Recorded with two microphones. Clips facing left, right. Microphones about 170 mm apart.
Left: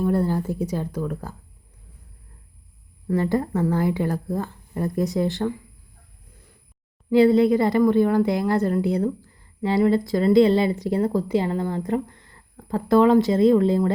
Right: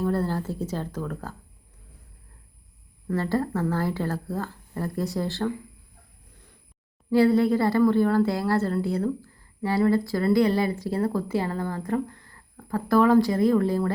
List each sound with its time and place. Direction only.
0.0 s speech: 15° left (ahead or behind)
3.1 s speech: 15° left (ahead or behind)
7.1 s a woman's voice: 20° left (ahead or behind)